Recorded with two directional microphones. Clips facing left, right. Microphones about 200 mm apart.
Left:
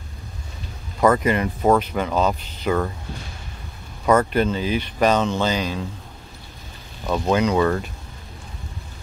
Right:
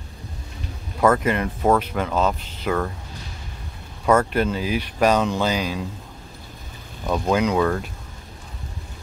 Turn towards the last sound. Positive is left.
turn(degrees=0)  # may be behind; listen again after turning